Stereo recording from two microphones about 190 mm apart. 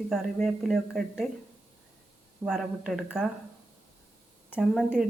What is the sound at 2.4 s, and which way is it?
Speech, centre (ahead or behind).